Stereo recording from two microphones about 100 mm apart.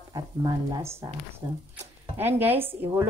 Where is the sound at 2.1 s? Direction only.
20° right (ahead or behind).